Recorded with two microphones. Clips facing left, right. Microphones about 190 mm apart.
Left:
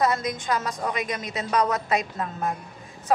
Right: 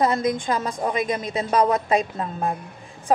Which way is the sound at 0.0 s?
30° right (ahead or behind).